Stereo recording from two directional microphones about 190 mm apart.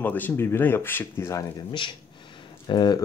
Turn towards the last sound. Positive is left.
turn(degrees=20)  # may be behind; listen again after turning